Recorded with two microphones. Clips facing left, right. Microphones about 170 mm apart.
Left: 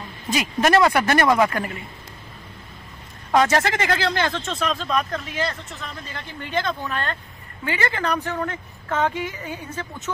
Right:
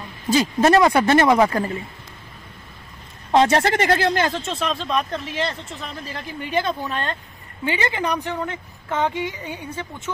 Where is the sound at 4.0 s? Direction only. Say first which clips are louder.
Right 3 dB; 40° right (ahead or behind).